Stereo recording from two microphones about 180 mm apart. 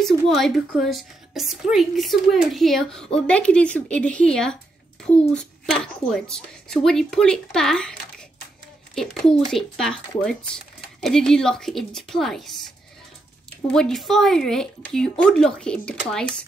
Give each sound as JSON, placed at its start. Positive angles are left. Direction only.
{"t": 0.0, "sound": "a woman's voice", "side_deg": 0}
{"t": 13.7, "sound": "a woman's voice", "side_deg": 5}